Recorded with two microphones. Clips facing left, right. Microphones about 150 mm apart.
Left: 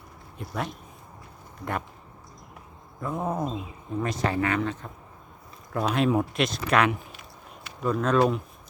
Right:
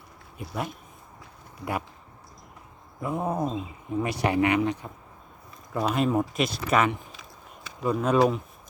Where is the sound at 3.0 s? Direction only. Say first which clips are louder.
Right 1 dB; 10° right (ahead or behind).